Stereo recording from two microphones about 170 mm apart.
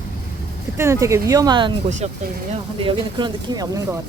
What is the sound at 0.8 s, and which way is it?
Speech, 15° right (ahead or behind).